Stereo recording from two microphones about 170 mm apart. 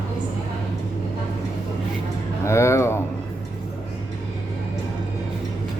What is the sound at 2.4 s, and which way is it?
Speech, 15° left (ahead or behind).